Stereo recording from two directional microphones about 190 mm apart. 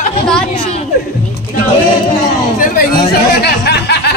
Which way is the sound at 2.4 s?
50° left (ahead or behind).